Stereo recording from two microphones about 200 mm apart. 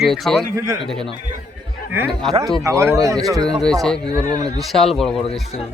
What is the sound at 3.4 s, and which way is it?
Speech, centre (ahead or behind).